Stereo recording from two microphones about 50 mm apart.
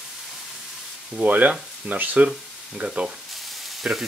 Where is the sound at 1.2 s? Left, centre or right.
Right.